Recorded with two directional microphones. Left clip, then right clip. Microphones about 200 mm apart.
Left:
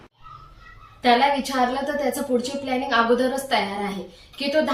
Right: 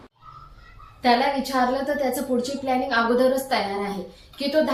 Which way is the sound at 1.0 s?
10° left (ahead or behind).